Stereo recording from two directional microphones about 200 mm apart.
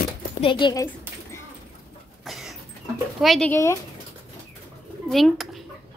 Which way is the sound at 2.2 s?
Centre (ahead or behind).